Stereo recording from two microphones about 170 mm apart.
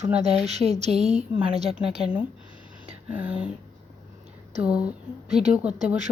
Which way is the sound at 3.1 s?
10° right (ahead or behind).